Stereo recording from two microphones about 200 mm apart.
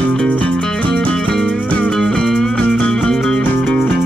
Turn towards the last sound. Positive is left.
turn(degrees=5)  # may be behind; listen again after turning